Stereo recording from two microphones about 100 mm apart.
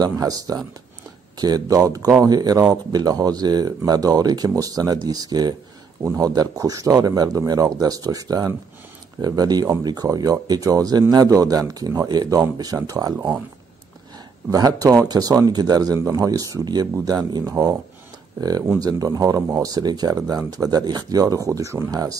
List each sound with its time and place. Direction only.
0.0 s speech: 40° right (ahead or behind)
14.5 s speech: 40° right (ahead or behind)
18.8 s speech: 40° right (ahead or behind)